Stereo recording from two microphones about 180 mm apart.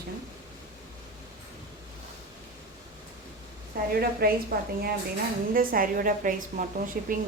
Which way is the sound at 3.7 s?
55° right (ahead or behind).